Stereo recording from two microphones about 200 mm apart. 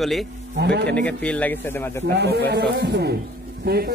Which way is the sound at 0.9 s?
5° left (ahead or behind).